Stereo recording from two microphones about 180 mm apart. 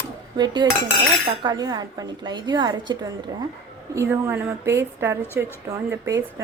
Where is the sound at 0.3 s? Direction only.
25° right (ahead or behind).